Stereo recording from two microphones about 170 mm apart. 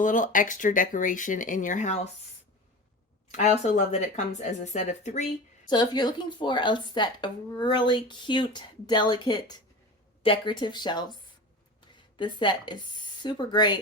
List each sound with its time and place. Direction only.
0.0 s speech: 50° left (ahead or behind)
3.3 s speech: 45° left (ahead or behind)
5.6 s speech: 25° left (ahead or behind)